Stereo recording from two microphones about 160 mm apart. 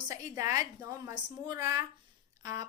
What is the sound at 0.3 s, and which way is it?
A woman's voice, 20° right (ahead or behind).